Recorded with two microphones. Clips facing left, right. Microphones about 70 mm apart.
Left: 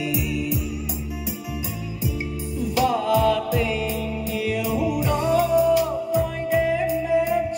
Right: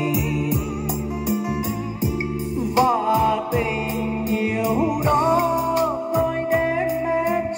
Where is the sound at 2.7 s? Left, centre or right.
Right.